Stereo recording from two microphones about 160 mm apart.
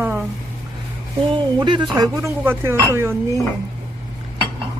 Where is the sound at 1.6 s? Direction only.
25° right (ahead or behind).